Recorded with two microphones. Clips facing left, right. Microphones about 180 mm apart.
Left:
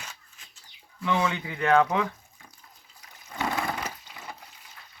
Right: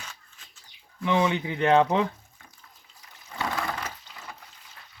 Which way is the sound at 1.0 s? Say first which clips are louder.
Right 3 dB; 20° right (ahead or behind).